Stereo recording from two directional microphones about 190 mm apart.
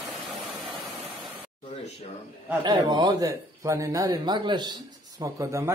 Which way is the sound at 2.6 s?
25° right (ahead or behind).